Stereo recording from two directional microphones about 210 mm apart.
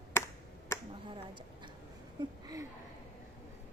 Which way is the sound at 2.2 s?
15° right (ahead or behind).